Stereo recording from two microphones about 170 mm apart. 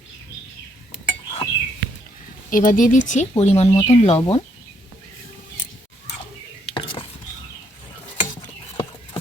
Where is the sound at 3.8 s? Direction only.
40° left (ahead or behind).